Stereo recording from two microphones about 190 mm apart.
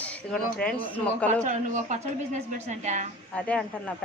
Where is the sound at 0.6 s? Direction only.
5° left (ahead or behind).